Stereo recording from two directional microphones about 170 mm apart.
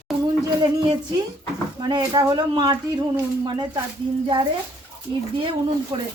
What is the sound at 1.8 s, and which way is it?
Speech, 25° right (ahead or behind).